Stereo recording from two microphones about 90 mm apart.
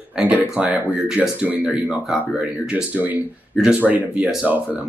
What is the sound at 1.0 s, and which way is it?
Speech, 5° right (ahead or behind).